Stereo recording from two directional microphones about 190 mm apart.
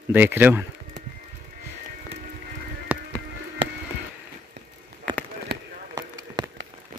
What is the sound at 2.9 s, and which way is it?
Music, 10° right (ahead or behind).